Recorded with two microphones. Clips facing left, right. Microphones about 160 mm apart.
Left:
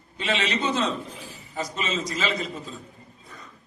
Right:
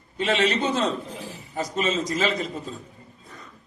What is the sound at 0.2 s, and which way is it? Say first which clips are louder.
A man's voice: right 4 dB; 50° right (ahead or behind).